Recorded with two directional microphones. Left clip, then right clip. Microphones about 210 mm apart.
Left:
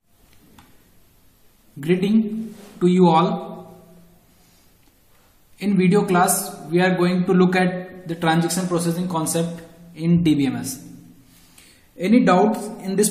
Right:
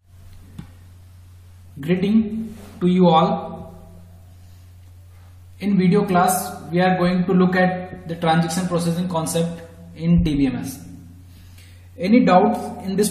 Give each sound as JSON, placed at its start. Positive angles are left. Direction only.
{"t": 1.8, "sound": "speech", "side_deg": 40}
{"t": 5.6, "sound": "a man's voice", "side_deg": 40}
{"t": 8.1, "sound": "a man's voice", "side_deg": 30}
{"t": 9.9, "sound": "speech", "side_deg": 35}
{"t": 11.5, "sound": "a man's voice", "side_deg": 30}